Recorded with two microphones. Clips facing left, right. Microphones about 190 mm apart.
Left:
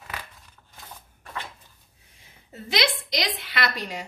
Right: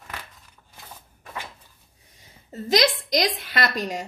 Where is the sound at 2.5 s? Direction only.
40° right (ahead or behind).